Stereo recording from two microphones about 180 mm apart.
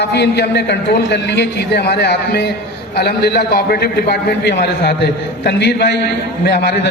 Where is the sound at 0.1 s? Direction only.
70° left (ahead or behind).